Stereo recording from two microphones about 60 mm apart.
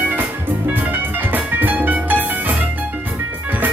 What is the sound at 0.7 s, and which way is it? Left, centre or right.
Music, right.